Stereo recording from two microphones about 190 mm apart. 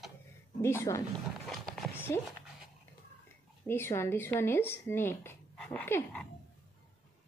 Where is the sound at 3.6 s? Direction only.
10° left (ahead or behind).